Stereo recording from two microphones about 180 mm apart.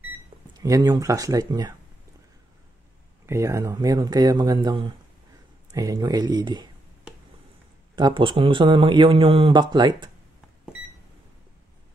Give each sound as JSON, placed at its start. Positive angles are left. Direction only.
{"t": 0.6, "sound": "speech", "side_deg": -20}
{"t": 3.3, "sound": "speech", "side_deg": -15}
{"t": 7.9, "sound": "speech", "side_deg": -25}